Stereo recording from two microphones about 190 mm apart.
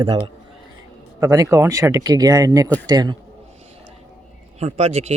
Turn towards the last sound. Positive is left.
turn(degrees=-35)  # may be behind; listen again after turning